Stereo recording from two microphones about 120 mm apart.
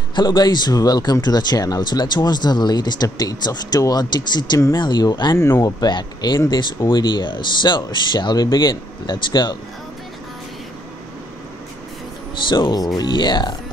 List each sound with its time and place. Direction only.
0.1 s speech: 40° left (ahead or behind)
12.4 s speech: 40° left (ahead or behind)